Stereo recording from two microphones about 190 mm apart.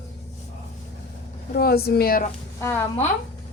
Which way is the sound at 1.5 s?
55° left (ahead or behind).